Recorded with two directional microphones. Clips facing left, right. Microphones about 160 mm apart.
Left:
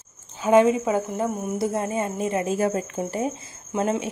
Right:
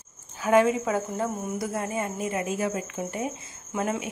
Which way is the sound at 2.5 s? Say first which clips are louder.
Left 5 dB; 40° left (ahead or behind).